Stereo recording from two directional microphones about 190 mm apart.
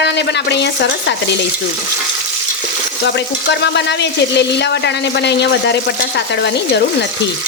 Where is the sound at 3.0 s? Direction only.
65° left (ahead or behind).